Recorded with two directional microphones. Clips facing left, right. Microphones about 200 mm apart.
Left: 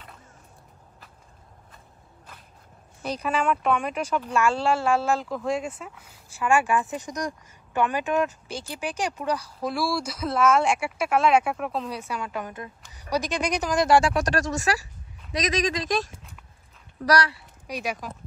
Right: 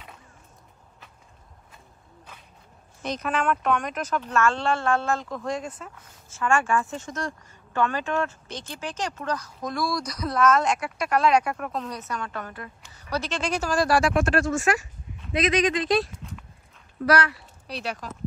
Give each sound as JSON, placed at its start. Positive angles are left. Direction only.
{"t": 3.0, "sound": "speech", "side_deg": 10}
{"t": 16.2, "sound": "dog", "side_deg": 0}
{"t": 17.0, "sound": "speech", "side_deg": 35}
{"t": 17.6, "sound": "speech", "side_deg": 10}